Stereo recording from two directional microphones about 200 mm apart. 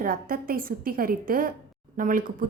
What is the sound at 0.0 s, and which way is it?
Speech, 45° right (ahead or behind).